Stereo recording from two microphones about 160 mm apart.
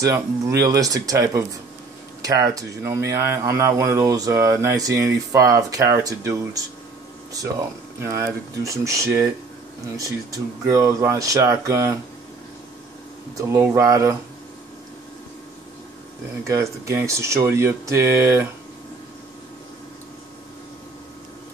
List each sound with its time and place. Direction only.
0.0 s speech: 20° right (ahead or behind)
13.4 s speech: 20° right (ahead or behind)
16.4 s speech: 20° right (ahead or behind)